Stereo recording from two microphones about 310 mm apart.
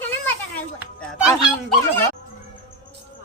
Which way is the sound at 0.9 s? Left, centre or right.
Centre.